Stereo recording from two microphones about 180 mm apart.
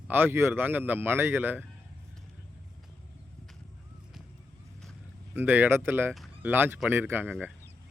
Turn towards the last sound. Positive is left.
turn(degrees=-10)  # may be behind; listen again after turning